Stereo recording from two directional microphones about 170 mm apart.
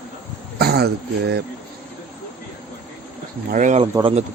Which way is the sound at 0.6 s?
70° right (ahead or behind).